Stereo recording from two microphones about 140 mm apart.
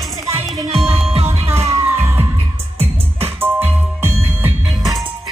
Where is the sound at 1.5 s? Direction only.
15° right (ahead or behind).